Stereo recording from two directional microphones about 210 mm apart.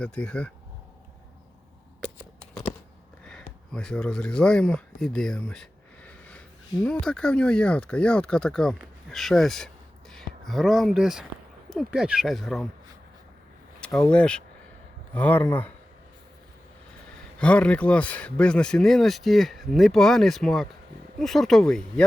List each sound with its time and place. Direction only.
0.0 s speech: 5° left (ahead or behind)
3.2 s speech: 5° left (ahead or behind)
13.8 s speech: 5° left (ahead or behind)
17.4 s speech: 5° left (ahead or behind)